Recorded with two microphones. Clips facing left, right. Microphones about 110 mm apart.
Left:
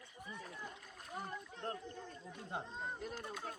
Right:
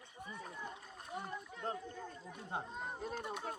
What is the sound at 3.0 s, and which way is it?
Speech, 30° right (ahead or behind).